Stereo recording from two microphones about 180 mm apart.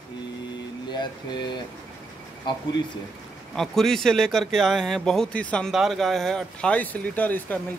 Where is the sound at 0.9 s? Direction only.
25° left (ahead or behind).